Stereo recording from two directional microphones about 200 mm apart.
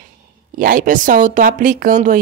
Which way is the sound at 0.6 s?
45° right (ahead or behind).